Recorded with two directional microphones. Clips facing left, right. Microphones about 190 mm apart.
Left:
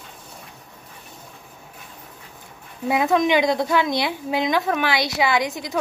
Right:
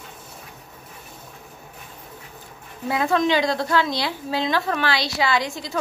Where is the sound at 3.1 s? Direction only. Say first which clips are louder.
Left 1 dB; 20° left (ahead or behind).